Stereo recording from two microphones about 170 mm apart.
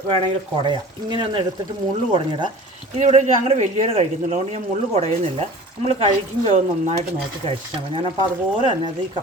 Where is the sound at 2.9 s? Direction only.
40° right (ahead or behind).